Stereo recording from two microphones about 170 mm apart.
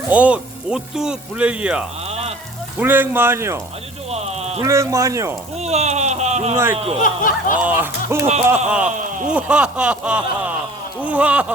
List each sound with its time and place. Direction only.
0.1 s speech: 5° right (ahead or behind)
2.0 s a sound: 40° right (ahead or behind)
2.7 s speech: 10° right (ahead or behind)
4.1 s a sound: 40° right (ahead or behind)
4.6 s speech: 20° right (ahead or behind)
5.5 s speech: 40° right (ahead or behind)
7.0 s speech: 50° left (ahead or behind)
7.6 s speech: 10° right (ahead or behind)
8.9 s speech: 50° right (ahead or behind)
9.3 s speech: 5° right (ahead or behind)